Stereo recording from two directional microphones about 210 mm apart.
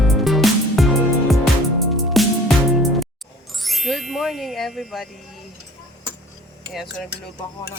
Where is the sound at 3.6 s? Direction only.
Centre (ahead or behind).